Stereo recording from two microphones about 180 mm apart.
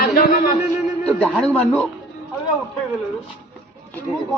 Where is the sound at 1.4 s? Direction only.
10° left (ahead or behind).